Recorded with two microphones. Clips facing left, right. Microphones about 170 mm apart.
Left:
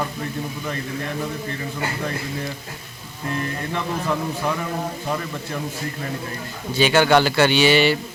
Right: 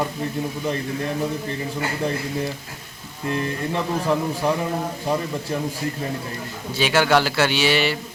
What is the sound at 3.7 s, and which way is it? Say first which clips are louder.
Speech: right 3 dB; 25° right (ahead or behind).